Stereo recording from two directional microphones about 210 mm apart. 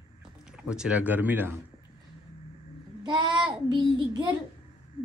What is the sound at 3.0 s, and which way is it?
Child singing, 20° right (ahead or behind).